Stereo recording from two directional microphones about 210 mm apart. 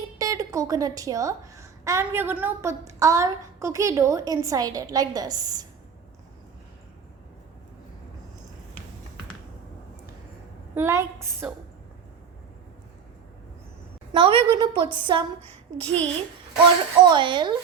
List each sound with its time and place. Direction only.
0.2 s speech: 15° right (ahead or behind)
10.8 s speech: 15° right (ahead or behind)
14.1 s a woman's voice: 25° right (ahead or behind)
15.8 s a child's voice: 5° left (ahead or behind)
17.1 s a woman's voice: 20° right (ahead or behind)